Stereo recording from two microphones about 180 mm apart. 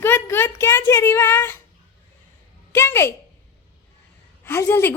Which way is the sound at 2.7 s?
15° left (ahead or behind).